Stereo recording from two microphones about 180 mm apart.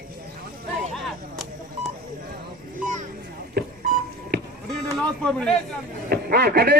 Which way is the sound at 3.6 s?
65° right (ahead or behind).